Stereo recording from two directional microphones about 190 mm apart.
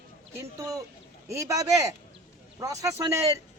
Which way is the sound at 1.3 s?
15° right (ahead or behind).